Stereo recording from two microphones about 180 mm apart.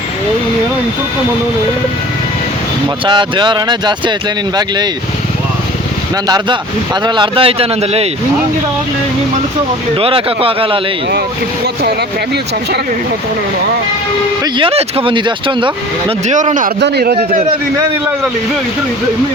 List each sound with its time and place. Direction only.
3.1 s speech: 25° right (ahead or behind)
6.2 s speech: 25° right (ahead or behind)
9.9 s speech: 30° right (ahead or behind)
11.6 s a man's voice: 65° right (ahead or behind)
14.4 s speech: 30° right (ahead or behind)
16.3 s a man's voice: 45° right (ahead or behind)
16.8 s a man's voice: 65° right (ahead or behind)